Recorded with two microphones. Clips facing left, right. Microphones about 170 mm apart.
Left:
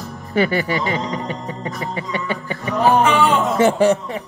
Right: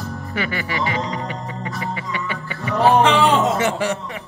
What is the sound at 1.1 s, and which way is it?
Music, 40° left (ahead or behind).